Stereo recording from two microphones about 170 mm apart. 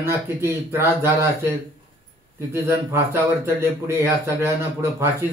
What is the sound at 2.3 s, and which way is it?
A man's voice, 15° right (ahead or behind).